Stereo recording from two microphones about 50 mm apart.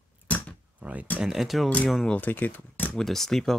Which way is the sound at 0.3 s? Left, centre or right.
Left.